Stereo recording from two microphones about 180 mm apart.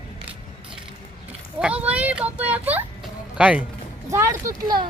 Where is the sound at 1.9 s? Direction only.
10° right (ahead or behind).